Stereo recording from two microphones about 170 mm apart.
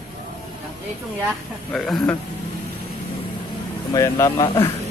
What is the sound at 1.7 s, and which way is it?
Speech, 5° left (ahead or behind).